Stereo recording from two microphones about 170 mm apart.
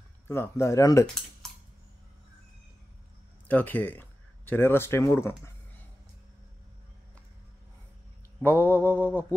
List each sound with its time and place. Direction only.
0.3 s speech: 15° left (ahead or behind)
3.4 s speech: 10° left (ahead or behind)
8.6 s speech: 10° left (ahead or behind)